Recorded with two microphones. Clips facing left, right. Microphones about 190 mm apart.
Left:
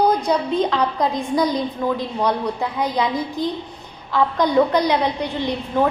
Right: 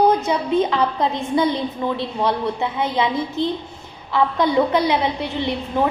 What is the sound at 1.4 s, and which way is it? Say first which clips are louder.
Speech: even; 40° left (ahead or behind).